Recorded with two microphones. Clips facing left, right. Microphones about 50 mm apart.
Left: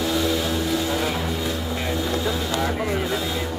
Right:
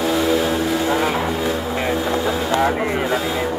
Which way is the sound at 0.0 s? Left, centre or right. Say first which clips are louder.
Right 5 dB; centre.